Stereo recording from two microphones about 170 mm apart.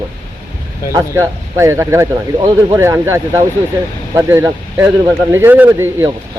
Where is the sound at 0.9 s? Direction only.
15° right (ahead or behind).